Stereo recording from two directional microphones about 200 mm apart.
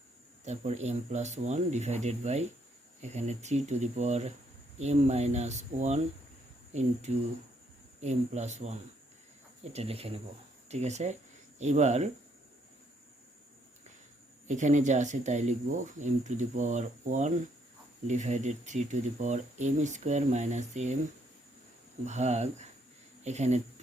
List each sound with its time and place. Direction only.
0.4 s speech: 35° right (ahead or behind)
14.4 s speech: 35° right (ahead or behind)
22.0 s speech: 35° right (ahead or behind)